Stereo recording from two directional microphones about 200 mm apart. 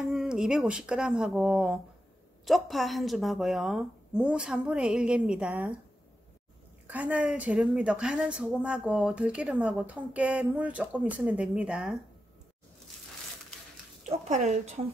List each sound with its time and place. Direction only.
0.0 s a woman's voice: centre (ahead or behind)
6.9 s a woman's voice: 5° right (ahead or behind)
14.0 s speech: 35° right (ahead or behind)